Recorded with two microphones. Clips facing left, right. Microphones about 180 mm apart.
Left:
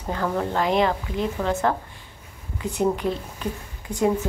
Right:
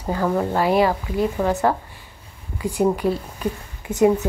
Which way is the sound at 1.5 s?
15° right (ahead or behind).